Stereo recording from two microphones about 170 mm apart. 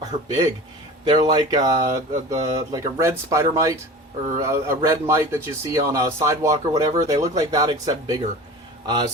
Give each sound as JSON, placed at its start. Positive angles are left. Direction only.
{"t": 0.1, "sound": "speech", "side_deg": -40}
{"t": 1.0, "sound": "speech", "side_deg": -30}